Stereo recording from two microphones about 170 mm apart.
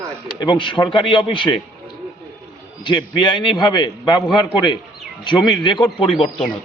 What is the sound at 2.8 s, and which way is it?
A man's voice, 25° left (ahead or behind).